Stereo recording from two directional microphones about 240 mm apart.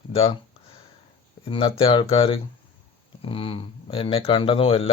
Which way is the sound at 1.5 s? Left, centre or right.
Left.